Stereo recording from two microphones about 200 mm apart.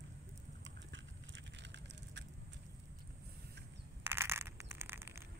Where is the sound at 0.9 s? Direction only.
65° right (ahead or behind).